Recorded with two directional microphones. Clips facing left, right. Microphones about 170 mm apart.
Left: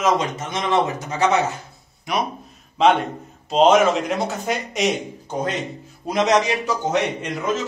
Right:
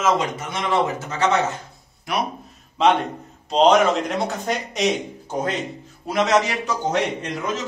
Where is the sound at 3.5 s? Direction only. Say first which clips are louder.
Left 1 dB; 5° left (ahead or behind).